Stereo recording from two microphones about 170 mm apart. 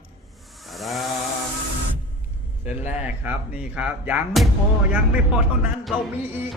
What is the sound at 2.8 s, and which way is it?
Speech, 40° left (ahead or behind).